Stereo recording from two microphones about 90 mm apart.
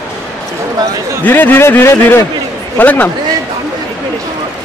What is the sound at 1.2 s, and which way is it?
A man's voice, 20° left (ahead or behind).